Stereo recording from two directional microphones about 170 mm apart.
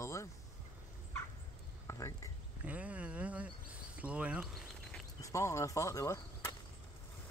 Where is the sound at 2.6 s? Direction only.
10° right (ahead or behind).